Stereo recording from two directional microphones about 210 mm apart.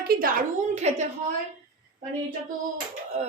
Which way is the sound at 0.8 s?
30° right (ahead or behind).